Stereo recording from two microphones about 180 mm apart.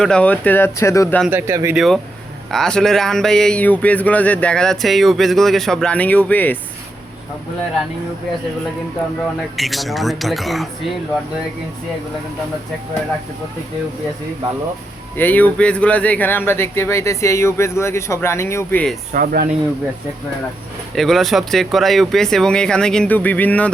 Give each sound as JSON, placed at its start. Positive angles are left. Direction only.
{"t": 0.0, "sound": "speech", "side_deg": 5}
{"t": 1.3, "sound": "a man's voice", "side_deg": -15}
{"t": 1.7, "sound": "a man's voice", "side_deg": 0}
{"t": 9.6, "sound": "a man's voice", "side_deg": 0}
{"t": 15.1, "sound": "speech", "side_deg": 10}
{"t": 19.1, "sound": "speech", "side_deg": -55}
{"t": 20.9, "sound": "a man's voice", "side_deg": 0}